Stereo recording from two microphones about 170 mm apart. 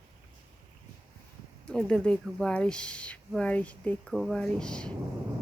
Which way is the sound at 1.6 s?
5° left (ahead or behind).